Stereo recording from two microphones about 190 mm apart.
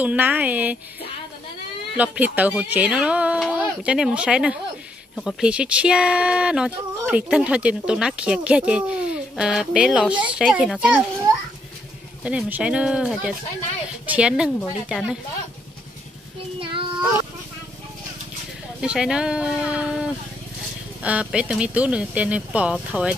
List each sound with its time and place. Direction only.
0.0 s speech: 10° right (ahead or behind)
2.0 s speech: 10° right (ahead or behind)
12.2 s speech: 5° right (ahead or behind)
16.5 s child singing: 30° right (ahead or behind)
18.8 s speech: 5° right (ahead or behind)